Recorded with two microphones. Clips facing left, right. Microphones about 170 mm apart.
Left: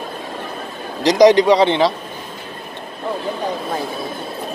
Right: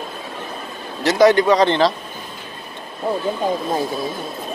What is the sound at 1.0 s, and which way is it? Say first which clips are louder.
Speech: left 3 dB; 15° left (ahead or behind).